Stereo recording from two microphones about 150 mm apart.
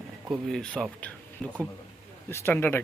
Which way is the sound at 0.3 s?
Centre (ahead or behind).